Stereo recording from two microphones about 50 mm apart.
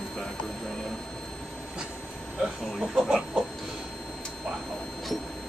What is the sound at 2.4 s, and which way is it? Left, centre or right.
Speech, centre.